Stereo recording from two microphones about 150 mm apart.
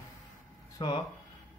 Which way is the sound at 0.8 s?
35° left (ahead or behind).